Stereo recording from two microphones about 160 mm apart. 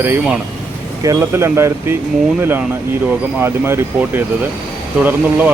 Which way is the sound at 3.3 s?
15° right (ahead or behind).